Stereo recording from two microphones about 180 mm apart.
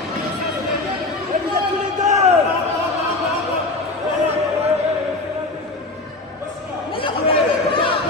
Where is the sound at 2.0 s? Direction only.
40° right (ahead or behind).